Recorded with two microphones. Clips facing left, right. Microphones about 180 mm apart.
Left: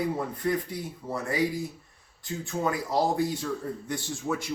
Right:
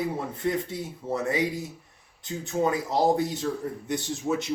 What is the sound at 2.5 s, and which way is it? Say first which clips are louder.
A man's voice: right 4 dB; 20° right (ahead or behind).